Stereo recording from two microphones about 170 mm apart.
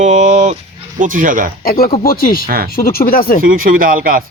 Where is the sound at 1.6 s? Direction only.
60° left (ahead or behind).